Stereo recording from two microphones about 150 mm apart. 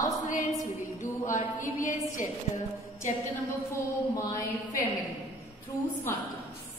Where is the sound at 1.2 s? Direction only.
60° left (ahead or behind).